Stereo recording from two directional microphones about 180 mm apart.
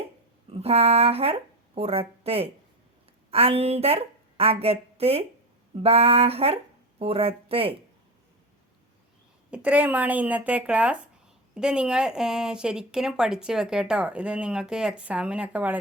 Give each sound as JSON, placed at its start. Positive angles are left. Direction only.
{"t": 0.5, "sound": "a woman's voice", "side_deg": -35}
{"t": 5.7, "sound": "a sound", "side_deg": -35}
{"t": 9.5, "sound": "speech", "side_deg": -5}